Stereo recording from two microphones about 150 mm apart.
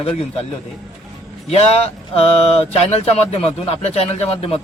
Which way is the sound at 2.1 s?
40° left (ahead or behind).